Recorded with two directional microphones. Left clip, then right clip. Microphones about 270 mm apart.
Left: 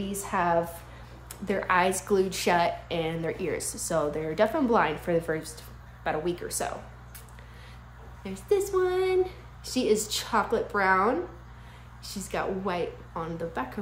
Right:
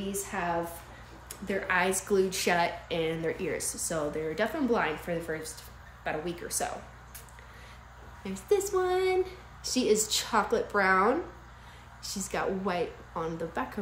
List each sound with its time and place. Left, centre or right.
0.1 s a woman's voice: centre
8.2 s speech: centre